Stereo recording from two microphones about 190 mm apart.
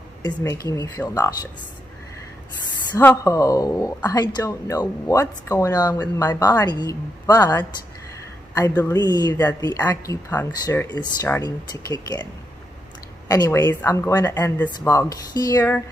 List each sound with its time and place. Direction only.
0.2 s speech: 15° left (ahead or behind)
3.0 s a woman's voice: 15° left (ahead or behind)
13.3 s a woman's voice: 15° left (ahead or behind)